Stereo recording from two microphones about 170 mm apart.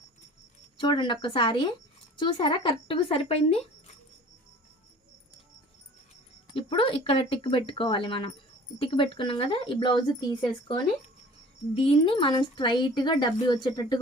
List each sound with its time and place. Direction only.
0.8 s speech: 30° left (ahead or behind)
6.5 s speech: 30° left (ahead or behind)